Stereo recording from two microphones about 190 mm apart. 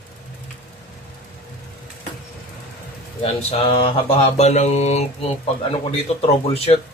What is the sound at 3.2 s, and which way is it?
Speech, 30° left (ahead or behind).